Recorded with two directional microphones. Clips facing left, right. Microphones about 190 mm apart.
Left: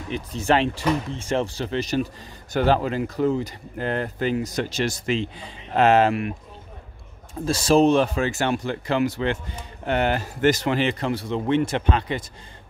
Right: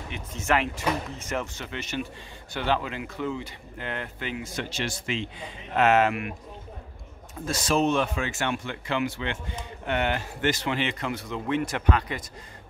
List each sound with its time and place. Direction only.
0.1 s speech: 35° left (ahead or behind)
7.4 s speech: 30° left (ahead or behind)